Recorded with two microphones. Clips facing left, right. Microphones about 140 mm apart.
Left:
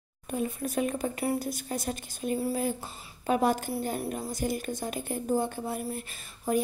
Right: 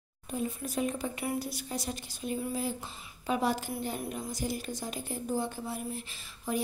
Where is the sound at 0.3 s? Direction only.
60° left (ahead or behind).